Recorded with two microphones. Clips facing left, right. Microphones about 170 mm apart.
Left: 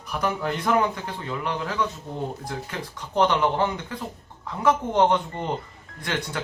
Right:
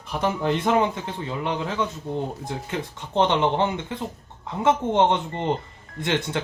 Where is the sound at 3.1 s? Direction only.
25° right (ahead or behind).